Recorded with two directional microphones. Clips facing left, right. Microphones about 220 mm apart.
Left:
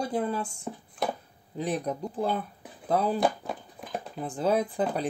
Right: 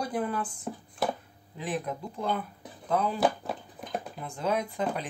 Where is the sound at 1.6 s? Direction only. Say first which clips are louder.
Left 3 dB; 40° left (ahead or behind).